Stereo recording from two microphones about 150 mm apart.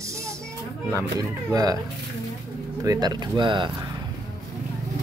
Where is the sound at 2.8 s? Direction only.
25° right (ahead or behind).